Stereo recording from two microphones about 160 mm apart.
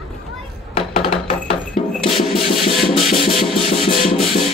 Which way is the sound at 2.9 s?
Centre (ahead or behind).